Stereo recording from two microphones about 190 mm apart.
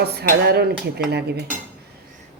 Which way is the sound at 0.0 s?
55° right (ahead or behind).